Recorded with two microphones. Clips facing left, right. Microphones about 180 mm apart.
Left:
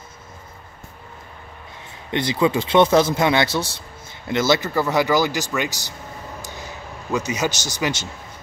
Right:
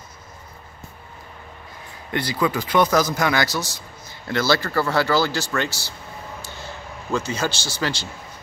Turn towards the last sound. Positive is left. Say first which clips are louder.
# left 2 dB
turn(degrees=15)  # may be behind; listen again after turning